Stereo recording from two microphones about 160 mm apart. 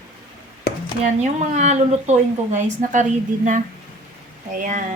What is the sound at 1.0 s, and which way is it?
Speech, 45° right (ahead or behind).